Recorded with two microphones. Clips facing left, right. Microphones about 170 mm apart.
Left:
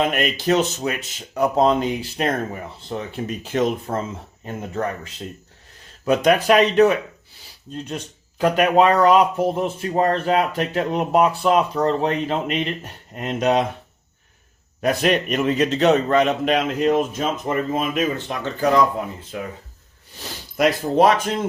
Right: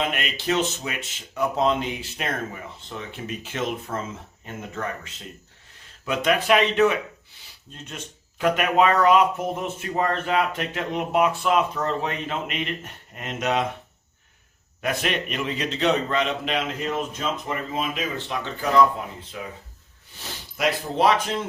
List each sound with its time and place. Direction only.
0.0 s speech: 45° left (ahead or behind)
6.1 s speech: 40° left (ahead or behind)
14.8 s a man's voice: 40° left (ahead or behind)
20.6 s a man's voice: 45° left (ahead or behind)